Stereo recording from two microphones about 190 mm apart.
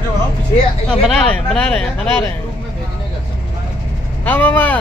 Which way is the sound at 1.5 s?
5° left (ahead or behind).